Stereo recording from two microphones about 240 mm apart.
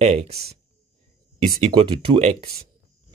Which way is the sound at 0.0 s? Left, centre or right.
Right.